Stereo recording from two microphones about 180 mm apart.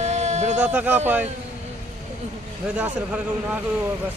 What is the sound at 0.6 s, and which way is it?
Speech, 10° right (ahead or behind).